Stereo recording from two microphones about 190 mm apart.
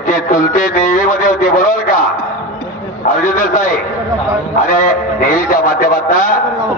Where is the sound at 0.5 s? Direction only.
45° left (ahead or behind).